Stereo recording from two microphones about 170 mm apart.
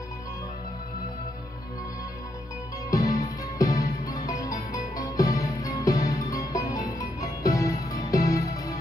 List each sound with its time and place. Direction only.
2.9 s music: 20° left (ahead or behind)